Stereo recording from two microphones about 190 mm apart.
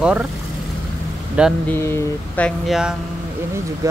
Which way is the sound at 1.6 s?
15° left (ahead or behind).